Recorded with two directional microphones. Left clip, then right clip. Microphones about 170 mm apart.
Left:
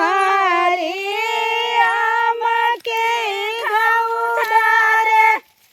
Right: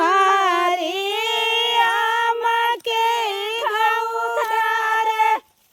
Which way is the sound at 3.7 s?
30° left (ahead or behind).